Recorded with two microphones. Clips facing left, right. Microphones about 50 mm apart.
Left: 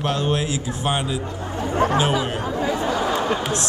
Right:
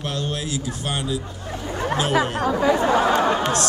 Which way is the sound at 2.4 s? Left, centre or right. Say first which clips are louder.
Right 4 dB; right.